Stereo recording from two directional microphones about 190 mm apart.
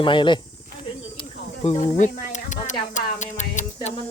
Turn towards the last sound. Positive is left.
turn(degrees=40)  # may be behind; listen again after turning